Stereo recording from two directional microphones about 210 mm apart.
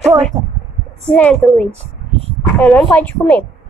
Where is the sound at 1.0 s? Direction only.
5° left (ahead or behind).